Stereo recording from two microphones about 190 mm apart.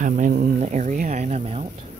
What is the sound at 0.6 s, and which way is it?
Speech, 40° right (ahead or behind).